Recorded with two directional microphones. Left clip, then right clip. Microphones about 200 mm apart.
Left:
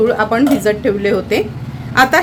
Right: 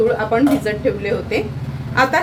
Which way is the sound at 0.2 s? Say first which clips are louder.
Left 3 dB; 65° left (ahead or behind).